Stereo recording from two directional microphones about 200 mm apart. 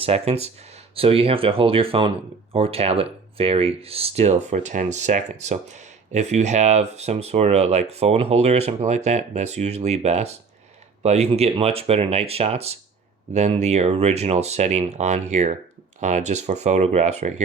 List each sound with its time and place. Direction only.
0.0 s speech: 30° right (ahead or behind)